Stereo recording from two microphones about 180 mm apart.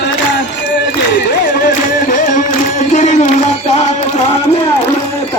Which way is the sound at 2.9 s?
40° left (ahead or behind).